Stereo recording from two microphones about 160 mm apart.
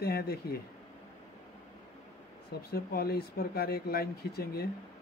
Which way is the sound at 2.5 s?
75° left (ahead or behind).